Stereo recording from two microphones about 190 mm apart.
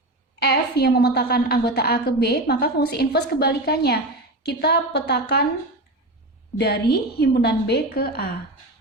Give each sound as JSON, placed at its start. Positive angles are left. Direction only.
{"t": 0.3, "sound": "a woman's voice", "side_deg": 55}
{"t": 6.9, "sound": "a woman's voice", "side_deg": 60}